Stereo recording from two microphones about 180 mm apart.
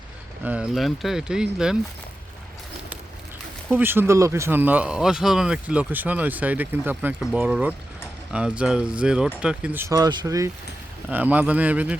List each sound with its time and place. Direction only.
0.4 s speech: 5° right (ahead or behind)
3.7 s speech: 10° right (ahead or behind)